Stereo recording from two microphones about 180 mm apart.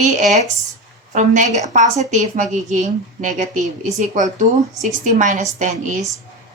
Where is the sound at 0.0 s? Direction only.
40° right (ahead or behind).